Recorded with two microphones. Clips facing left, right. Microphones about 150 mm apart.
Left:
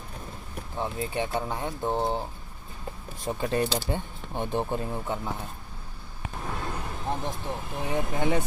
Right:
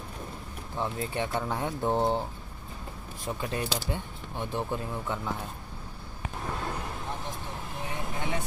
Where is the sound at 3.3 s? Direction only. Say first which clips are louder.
Left 5 dB; 30° left (ahead or behind).